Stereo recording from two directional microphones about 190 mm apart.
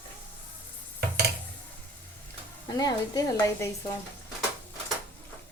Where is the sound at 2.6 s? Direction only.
20° left (ahead or behind).